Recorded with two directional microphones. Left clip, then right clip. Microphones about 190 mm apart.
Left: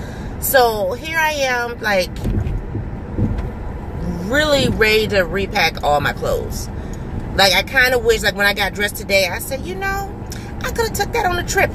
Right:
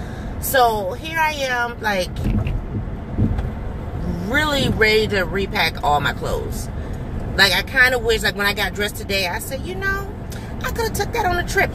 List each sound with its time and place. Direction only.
0.5 s speech: 20° left (ahead or behind)
4.3 s speech: 15° left (ahead or behind)
7.3 s speech: 15° left (ahead or behind)
11.1 s speech: 15° left (ahead or behind)